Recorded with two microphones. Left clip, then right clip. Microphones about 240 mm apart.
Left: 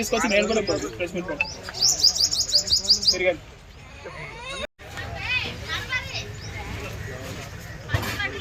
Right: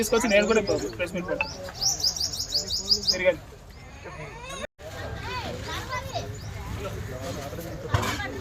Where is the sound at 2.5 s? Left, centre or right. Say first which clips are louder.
Left 4 dB; left.